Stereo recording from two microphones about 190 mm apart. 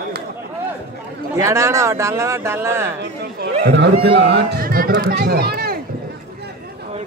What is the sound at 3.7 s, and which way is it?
Speech, 65° right (ahead or behind).